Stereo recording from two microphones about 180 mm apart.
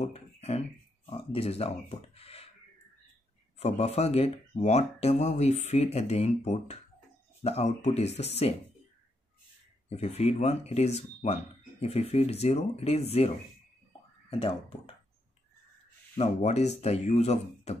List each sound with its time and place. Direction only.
0.0 s a sound: 35° left (ahead or behind)
3.5 s speech: 35° left (ahead or behind)
9.8 s speech: 35° left (ahead or behind)
14.3 s speech: 35° left (ahead or behind)
16.2 s speech: 35° left (ahead or behind)